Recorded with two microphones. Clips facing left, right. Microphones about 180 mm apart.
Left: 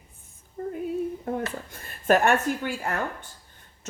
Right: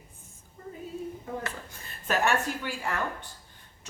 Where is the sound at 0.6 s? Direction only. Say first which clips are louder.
Left 11 dB; 55° left (ahead or behind).